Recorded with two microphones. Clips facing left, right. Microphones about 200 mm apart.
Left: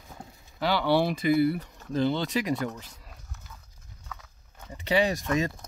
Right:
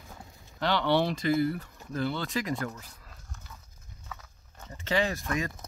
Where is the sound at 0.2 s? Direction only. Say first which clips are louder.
Left 4 dB; 25° left (ahead or behind).